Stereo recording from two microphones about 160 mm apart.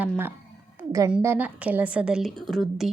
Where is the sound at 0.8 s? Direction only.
20° right (ahead or behind).